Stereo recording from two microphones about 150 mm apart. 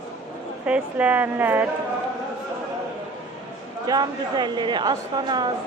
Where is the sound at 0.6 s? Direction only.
10° right (ahead or behind).